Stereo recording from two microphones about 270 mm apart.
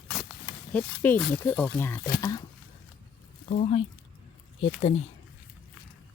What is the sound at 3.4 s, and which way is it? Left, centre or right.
Speech, left.